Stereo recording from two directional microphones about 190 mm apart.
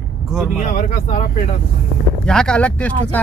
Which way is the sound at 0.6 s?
40° left (ahead or behind).